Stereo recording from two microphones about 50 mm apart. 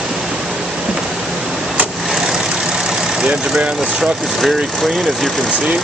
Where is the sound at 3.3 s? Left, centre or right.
Centre.